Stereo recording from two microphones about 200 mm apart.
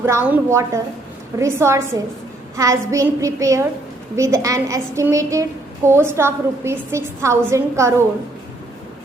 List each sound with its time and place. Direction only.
0.0 s a woman's voice: 10° right (ahead or behind)